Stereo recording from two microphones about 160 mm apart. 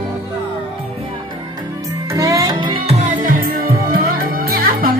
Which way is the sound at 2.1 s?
20° right (ahead or behind).